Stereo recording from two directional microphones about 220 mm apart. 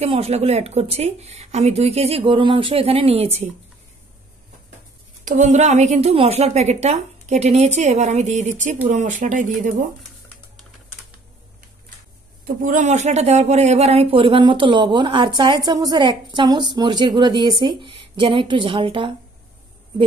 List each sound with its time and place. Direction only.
0.0 s a woman's voice: 25° right (ahead or behind)
5.2 s a woman's voice: 35° right (ahead or behind)
12.4 s a woman's voice: 35° right (ahead or behind)